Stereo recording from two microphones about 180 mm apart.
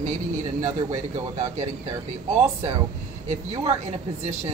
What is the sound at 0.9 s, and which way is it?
Speech, 40° right (ahead or behind).